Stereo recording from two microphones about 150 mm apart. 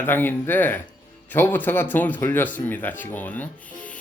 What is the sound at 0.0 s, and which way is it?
Speech, 15° left (ahead or behind).